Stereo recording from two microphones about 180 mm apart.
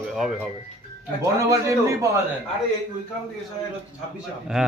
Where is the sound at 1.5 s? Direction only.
20° right (ahead or behind).